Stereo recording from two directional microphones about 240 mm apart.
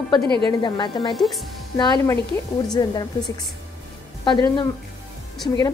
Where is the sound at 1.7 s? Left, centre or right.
Centre.